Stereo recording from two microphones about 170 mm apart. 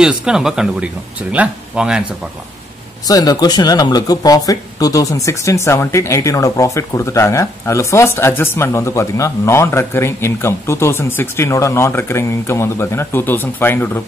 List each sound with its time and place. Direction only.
0.0 s speech: 5° right (ahead or behind)
3.1 s speech: 20° left (ahead or behind)